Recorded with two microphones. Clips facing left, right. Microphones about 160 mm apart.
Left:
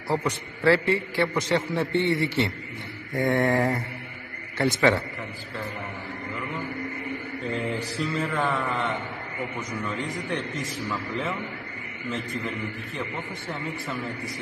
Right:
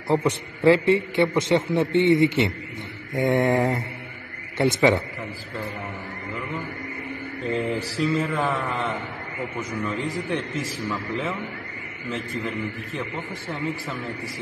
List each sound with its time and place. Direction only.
0.1 s a man's voice: 20° right (ahead or behind)
7.7 s mantra: 35° right (ahead or behind)
8.1 s a man's voice: 5° right (ahead or behind)
10.3 s a man's voice: centre (ahead or behind)